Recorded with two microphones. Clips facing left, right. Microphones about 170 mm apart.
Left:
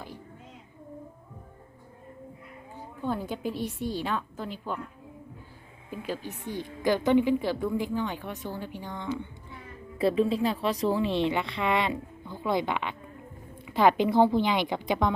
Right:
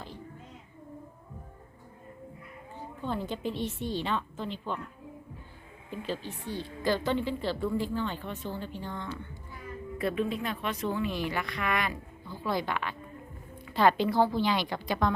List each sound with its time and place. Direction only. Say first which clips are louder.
3.0 s a woman's voice: left 2 dB; 10° left (ahead or behind)
5.9 s a woman's voice: left 1 dB; 10° left (ahead or behind)
10.0 s a woman's voice: left 6 dB; 30° left (ahead or behind)